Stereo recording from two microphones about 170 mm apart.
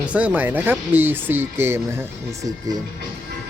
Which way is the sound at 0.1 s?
10° right (ahead or behind).